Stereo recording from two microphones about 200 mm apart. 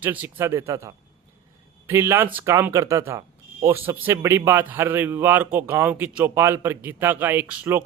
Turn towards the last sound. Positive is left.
turn(degrees=-10)  # may be behind; listen again after turning